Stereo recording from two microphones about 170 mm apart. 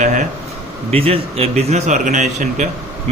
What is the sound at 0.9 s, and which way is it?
A man's voice, 35° right (ahead or behind).